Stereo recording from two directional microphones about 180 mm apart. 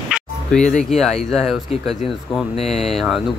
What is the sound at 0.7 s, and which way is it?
Speech, centre (ahead or behind).